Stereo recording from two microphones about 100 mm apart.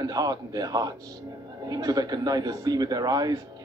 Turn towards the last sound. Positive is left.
turn(degrees=-40)  # may be behind; listen again after turning